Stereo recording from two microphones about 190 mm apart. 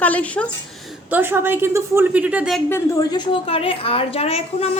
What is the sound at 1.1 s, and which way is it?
A woman's voice, 10° right (ahead or behind).